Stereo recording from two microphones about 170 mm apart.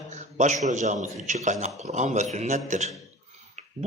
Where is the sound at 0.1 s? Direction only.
45° right (ahead or behind).